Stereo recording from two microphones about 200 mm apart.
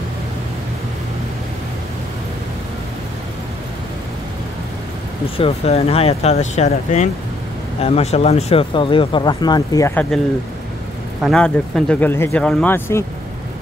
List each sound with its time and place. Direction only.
5.4 s speech: 30° left (ahead or behind)
11.1 s speech: centre (ahead or behind)